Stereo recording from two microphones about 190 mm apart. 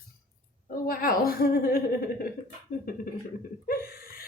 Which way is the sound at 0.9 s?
50° left (ahead or behind).